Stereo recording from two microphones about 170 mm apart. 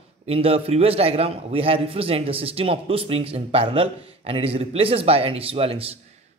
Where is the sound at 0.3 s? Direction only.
35° right (ahead or behind).